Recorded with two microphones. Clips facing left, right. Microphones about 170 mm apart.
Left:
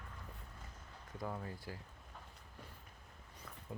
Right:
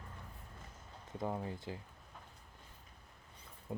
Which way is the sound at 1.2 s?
25° right (ahead or behind).